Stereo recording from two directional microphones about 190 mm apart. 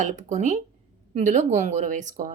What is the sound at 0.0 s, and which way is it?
Speech, 40° right (ahead or behind).